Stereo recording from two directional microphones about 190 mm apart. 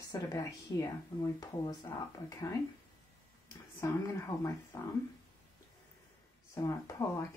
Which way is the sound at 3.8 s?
15° left (ahead or behind).